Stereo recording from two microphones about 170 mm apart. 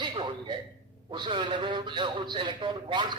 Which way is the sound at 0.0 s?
25° right (ahead or behind).